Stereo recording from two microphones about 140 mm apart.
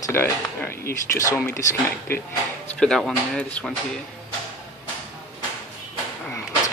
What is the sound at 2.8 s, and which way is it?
Speech, 5° left (ahead or behind).